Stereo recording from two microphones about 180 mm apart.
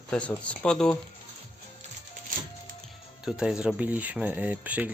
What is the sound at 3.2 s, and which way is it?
Speech, 5° right (ahead or behind).